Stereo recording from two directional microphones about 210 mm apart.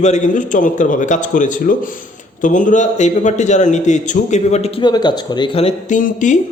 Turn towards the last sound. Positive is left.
turn(degrees=40)  # may be behind; listen again after turning